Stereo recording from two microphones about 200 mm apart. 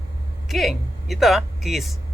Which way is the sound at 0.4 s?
Centre (ahead or behind).